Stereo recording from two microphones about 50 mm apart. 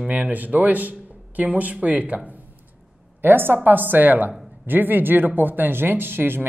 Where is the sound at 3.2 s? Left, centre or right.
Right.